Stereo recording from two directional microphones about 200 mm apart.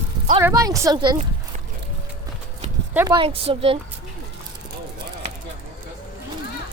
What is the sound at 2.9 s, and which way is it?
Speech, 20° right (ahead or behind).